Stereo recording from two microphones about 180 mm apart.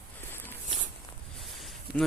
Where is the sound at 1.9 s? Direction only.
65° right (ahead or behind).